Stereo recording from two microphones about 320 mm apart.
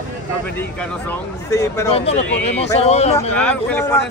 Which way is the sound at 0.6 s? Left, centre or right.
Centre.